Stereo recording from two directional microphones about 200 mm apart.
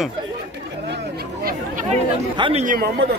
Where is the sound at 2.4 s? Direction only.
30° right (ahead or behind).